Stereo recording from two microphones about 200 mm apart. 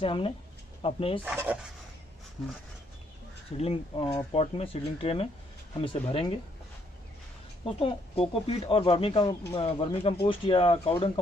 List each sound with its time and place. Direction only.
0.0 s speech: 25° left (ahead or behind)
1.2 s speech: 10° right (ahead or behind)
3.5 s speech: 30° left (ahead or behind)
7.6 s speech: 30° left (ahead or behind)